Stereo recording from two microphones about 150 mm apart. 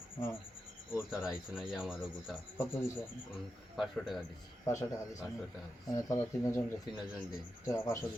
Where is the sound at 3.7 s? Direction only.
Centre (ahead or behind).